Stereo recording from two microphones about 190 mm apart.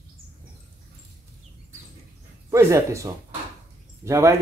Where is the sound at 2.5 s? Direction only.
15° right (ahead or behind).